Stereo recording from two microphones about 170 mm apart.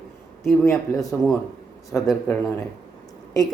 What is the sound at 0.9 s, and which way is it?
A man's voice, 5° left (ahead or behind).